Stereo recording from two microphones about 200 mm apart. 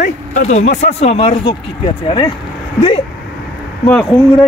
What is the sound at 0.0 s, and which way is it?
Speech, 35° left (ahead or behind).